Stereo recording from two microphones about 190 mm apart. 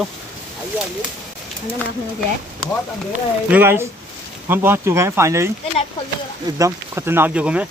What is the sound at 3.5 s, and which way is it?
Speech, 10° right (ahead or behind).